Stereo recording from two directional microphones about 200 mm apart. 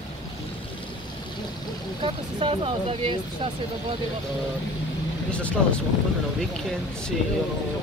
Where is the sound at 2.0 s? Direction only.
30° right (ahead or behind).